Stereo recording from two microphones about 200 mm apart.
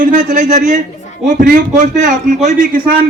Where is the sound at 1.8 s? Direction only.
40° right (ahead or behind).